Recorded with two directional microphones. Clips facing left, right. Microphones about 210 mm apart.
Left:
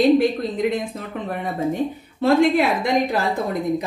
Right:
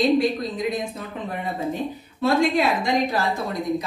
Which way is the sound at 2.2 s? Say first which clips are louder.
Left 3 dB; 55° left (ahead or behind).